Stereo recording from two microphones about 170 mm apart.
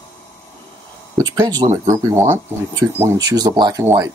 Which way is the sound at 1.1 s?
20° right (ahead or behind).